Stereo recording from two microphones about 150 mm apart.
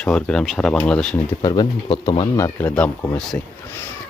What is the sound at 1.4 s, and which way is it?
Speech, 25° left (ahead or behind).